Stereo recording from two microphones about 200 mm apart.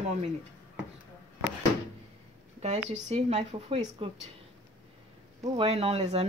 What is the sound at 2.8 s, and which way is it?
Speech, 35° right (ahead or behind).